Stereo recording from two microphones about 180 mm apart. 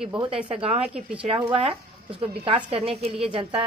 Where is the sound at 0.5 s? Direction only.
30° right (ahead or behind).